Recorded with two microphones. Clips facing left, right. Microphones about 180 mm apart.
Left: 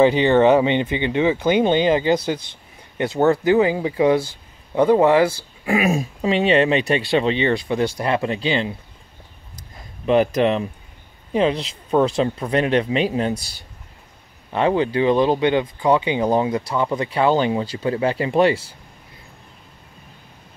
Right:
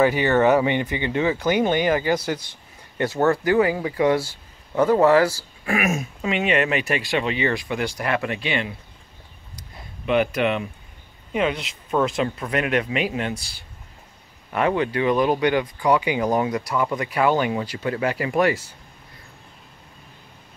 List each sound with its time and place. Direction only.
0.0 s speech: 25° left (ahead or behind)
9.6 s a sound: 35° left (ahead or behind)
11.3 s speech: 30° left (ahead or behind)
14.5 s speech: 25° left (ahead or behind)